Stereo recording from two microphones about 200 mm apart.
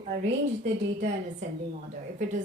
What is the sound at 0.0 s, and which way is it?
A woman's voice, 40° right (ahead or behind).